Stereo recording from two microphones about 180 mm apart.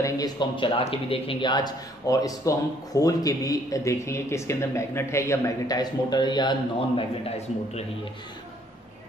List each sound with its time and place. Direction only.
0.0 s a man's voice: 25° left (ahead or behind)